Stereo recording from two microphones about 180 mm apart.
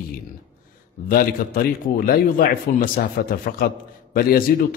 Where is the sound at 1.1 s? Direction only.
55° left (ahead or behind).